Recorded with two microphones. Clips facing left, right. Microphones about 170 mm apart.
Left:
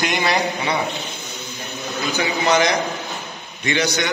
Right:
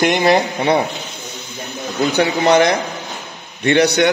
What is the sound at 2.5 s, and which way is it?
A man's voice, 60° right (ahead or behind).